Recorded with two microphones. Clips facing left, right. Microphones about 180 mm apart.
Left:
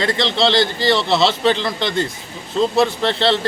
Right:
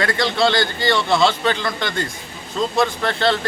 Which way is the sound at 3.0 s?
25° left (ahead or behind).